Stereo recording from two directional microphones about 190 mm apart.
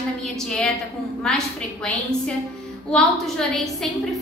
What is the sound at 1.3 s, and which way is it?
Speech, 5° left (ahead or behind).